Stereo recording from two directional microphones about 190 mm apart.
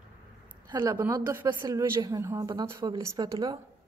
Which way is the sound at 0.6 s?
15° right (ahead or behind).